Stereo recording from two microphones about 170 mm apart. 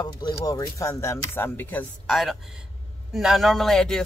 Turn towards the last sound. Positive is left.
turn(degrees=5)  # may be behind; listen again after turning